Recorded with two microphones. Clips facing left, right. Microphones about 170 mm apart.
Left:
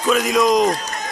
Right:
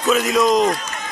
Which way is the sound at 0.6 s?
35° left (ahead or behind).